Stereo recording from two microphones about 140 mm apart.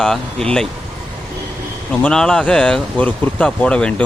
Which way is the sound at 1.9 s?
5° left (ahead or behind).